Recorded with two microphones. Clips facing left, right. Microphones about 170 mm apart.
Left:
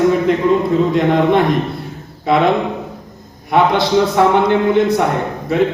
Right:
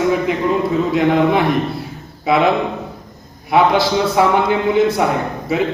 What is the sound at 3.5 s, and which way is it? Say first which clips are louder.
A man's voice: even; 5° right (ahead or behind).